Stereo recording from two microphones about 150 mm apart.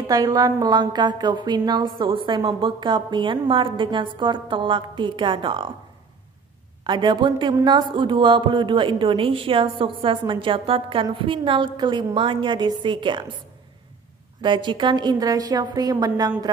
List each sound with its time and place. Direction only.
0.1 s a woman's voice: 25° right (ahead or behind)
6.8 s a woman's voice: 30° right (ahead or behind)
14.4 s a woman's voice: 30° right (ahead or behind)